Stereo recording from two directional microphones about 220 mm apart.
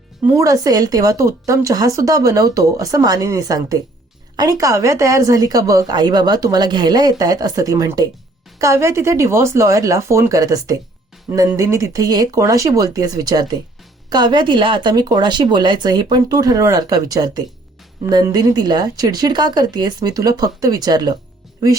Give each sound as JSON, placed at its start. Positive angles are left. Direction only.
{"t": 0.3, "sound": "speech", "side_deg": -15}